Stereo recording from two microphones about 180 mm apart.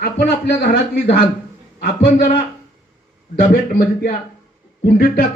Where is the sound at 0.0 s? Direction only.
65° left (ahead or behind).